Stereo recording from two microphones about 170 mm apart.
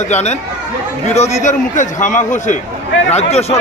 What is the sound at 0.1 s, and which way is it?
A man's voice, 40° left (ahead or behind).